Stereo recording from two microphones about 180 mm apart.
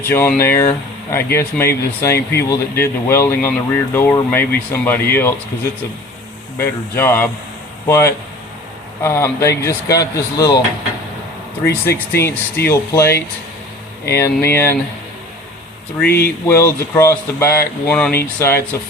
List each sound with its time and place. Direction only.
0.0 s speech: 10° left (ahead or behind)
6.6 s speech: 15° left (ahead or behind)
11.7 s speech: 10° left (ahead or behind)
14.2 s speech: 15° left (ahead or behind)
16.0 s speech: 60° left (ahead or behind)
16.5 s speech: 15° left (ahead or behind)